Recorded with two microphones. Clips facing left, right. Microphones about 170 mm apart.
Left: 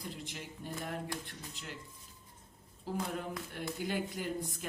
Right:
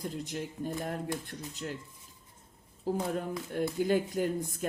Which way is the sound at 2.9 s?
45° right (ahead or behind).